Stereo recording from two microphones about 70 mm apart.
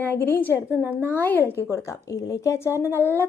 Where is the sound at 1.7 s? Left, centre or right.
Left.